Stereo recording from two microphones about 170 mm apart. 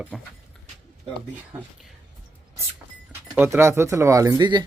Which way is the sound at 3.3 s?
15° right (ahead or behind).